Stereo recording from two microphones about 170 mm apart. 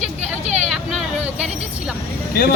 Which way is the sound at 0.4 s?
40° right (ahead or behind).